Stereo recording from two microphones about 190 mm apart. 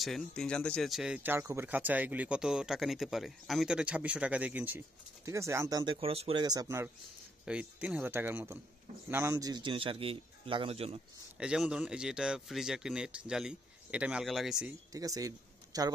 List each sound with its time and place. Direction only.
0.0 s speech: centre (ahead or behind); by 6.9 s 15° right (ahead or behind)
7.4 s a man's voice: 5° right (ahead or behind); by 11.0 s 30° right (ahead or behind)
11.3 s speech: 5° right (ahead or behind)
14.9 s a man's voice: 20° right (ahead or behind)